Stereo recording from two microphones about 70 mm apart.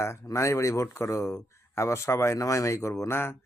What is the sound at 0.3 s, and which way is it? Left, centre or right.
Speech, left.